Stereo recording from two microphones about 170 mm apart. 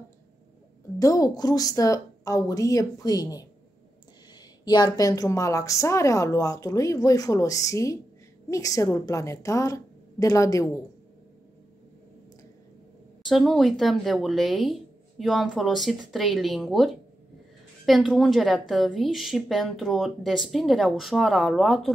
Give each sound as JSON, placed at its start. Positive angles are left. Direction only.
{"t": 0.9, "sound": "a woman's voice", "side_deg": 20}
{"t": 4.6, "sound": "a woman's voice", "side_deg": 25}
{"t": 13.3, "sound": "a woman's voice", "side_deg": 0}